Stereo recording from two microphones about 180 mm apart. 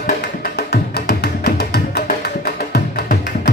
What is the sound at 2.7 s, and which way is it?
Music, 50° left (ahead or behind).